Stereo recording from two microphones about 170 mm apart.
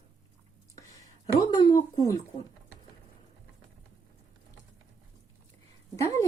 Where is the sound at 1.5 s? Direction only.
25° left (ahead or behind).